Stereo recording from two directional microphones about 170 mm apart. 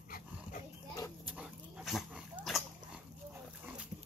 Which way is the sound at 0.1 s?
50° left (ahead or behind).